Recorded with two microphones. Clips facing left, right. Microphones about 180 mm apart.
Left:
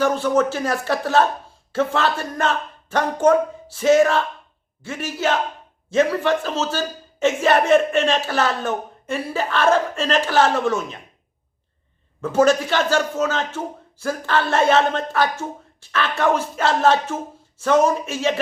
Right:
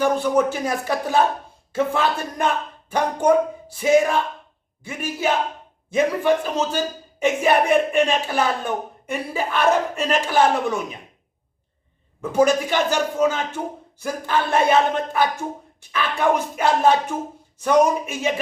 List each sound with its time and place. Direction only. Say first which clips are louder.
0.0 s a man's voice: even; 15° right (ahead or behind)
12.2 s a man's voice: left 1 dB; 15° right (ahead or behind)